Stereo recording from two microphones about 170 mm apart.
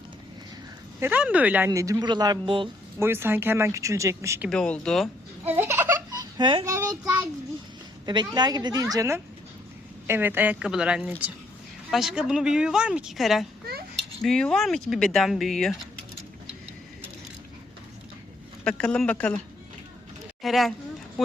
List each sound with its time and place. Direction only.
0.9 s speech: 10° right (ahead or behind); by 2.6 s 25° right (ahead or behind)
3.0 s speech: 15° right (ahead or behind)
4.4 s speech: 5° left (ahead or behind)
5.5 s baby laughter: 15° right (ahead or behind)
6.4 s speech: 30° right (ahead or behind)
8.0 s speech: 25° right (ahead or behind); by 15.8 s centre (ahead or behind)
18.6 s speech: 5° left (ahead or behind)
20.4 s speech: centre (ahead or behind)